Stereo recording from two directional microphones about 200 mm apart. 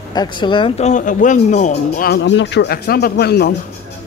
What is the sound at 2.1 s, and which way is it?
Speech, 65° left (ahead or behind).